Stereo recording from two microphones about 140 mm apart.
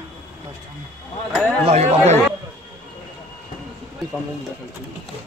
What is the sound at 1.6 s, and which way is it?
Speech, 50° right (ahead or behind).